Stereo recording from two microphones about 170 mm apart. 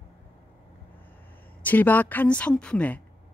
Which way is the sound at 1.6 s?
10° left (ahead or behind).